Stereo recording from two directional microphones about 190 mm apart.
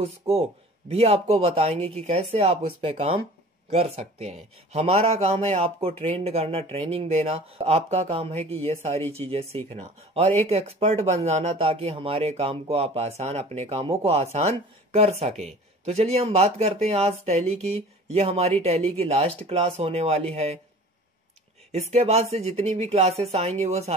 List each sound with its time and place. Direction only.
0.0 s speech: 30° right (ahead or behind)
21.9 s speech: 35° right (ahead or behind)